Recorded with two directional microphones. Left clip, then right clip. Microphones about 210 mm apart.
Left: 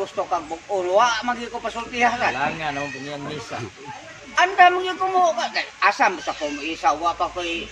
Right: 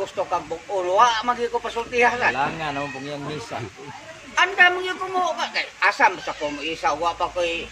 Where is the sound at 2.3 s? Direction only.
25° right (ahead or behind).